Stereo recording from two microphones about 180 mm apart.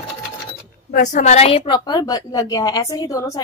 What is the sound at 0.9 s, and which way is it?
A woman's voice, 45° left (ahead or behind).